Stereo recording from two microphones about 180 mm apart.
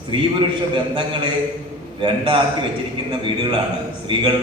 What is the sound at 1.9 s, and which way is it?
A man's voice, 25° right (ahead or behind).